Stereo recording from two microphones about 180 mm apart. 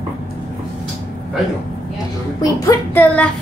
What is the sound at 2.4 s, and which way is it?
Music, 20° left (ahead or behind).